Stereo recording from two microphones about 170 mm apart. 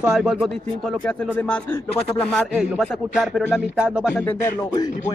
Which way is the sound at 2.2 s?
Centre (ahead or behind).